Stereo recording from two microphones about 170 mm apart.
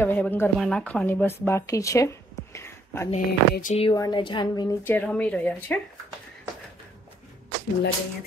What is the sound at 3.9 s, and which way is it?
Speech, 25° left (ahead or behind).